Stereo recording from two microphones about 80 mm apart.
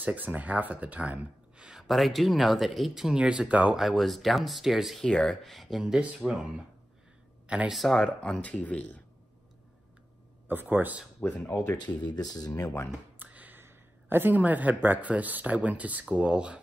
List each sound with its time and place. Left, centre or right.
0.0 s speech: right
3.7 s speech: centre
5.0 s speech: centre
7.7 s speech: centre
10.5 s speech: right
11.2 s speech: left
11.5 s speech: left
13.2 s speech: right